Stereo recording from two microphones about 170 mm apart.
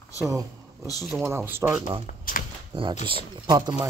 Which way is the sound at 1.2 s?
15° right (ahead or behind).